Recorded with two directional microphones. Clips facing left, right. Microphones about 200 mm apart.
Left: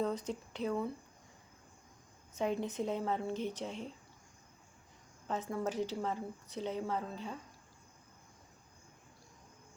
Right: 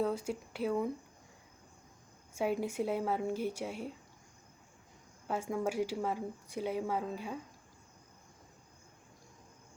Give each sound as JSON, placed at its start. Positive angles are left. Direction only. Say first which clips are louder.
{"t": 0.0, "sound": "speech", "louder": "right 2 dB", "side_deg": -10}
{"t": 2.3, "sound": "speech", "louder": "right 2 dB", "side_deg": -10}
{"t": 5.3, "sound": "speech", "louder": "right 2 dB", "side_deg": -10}